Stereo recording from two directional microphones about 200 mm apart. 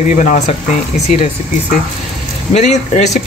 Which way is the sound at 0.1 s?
40° left (ahead or behind).